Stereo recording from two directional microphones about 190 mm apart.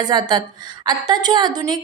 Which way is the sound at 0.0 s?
20° right (ahead or behind).